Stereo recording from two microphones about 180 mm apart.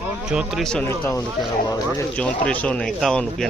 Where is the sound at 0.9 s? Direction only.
15° left (ahead or behind).